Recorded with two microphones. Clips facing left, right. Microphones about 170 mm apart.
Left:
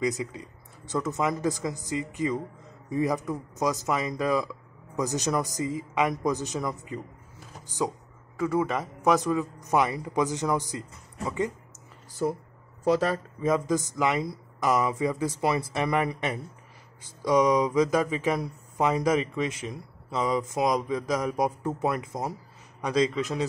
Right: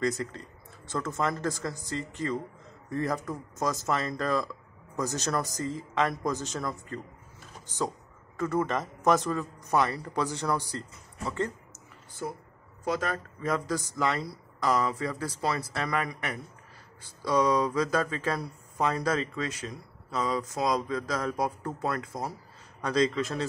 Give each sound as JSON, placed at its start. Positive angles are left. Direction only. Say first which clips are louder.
{"t": 0.2, "sound": "speech", "louder": "left 1 dB", "side_deg": 10}
{"t": 8.4, "sound": "speech", "louder": "left 2 dB", "side_deg": 10}
{"t": 12.8, "sound": "speech", "louder": "left 7 dB", "side_deg": 40}
{"t": 13.4, "sound": "speech", "louder": "left 5 dB", "side_deg": 20}